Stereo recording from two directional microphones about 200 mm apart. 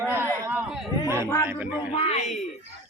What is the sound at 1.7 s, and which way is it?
Speech, 30° left (ahead or behind).